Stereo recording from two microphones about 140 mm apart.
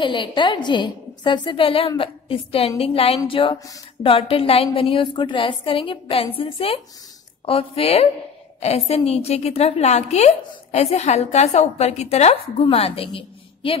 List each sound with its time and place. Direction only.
0.0 s a woman's voice: 35° left (ahead or behind)